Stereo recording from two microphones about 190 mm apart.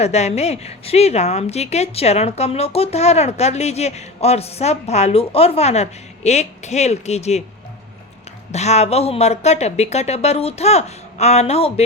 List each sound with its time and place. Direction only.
0.0 s a woman's voice: 35° left (ahead or behind)
8.5 s a woman's voice: 35° left (ahead or behind)